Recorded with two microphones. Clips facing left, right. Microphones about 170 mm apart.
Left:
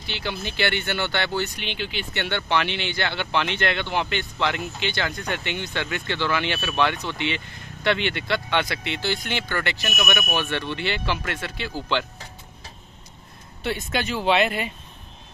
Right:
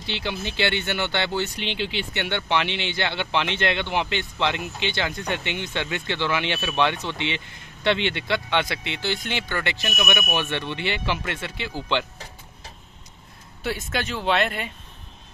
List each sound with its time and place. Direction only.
0.0 s speech: 20° right (ahead or behind)
13.6 s speech: 5° right (ahead or behind)